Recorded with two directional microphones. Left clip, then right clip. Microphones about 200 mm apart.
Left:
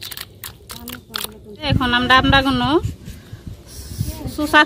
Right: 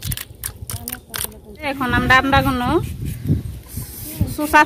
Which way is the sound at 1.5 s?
20° left (ahead or behind).